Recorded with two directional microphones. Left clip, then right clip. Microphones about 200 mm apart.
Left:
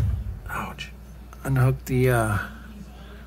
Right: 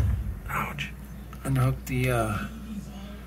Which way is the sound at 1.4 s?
30° left (ahead or behind).